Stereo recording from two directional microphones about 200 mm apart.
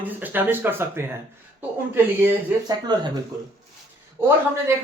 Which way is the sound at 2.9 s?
20° right (ahead or behind).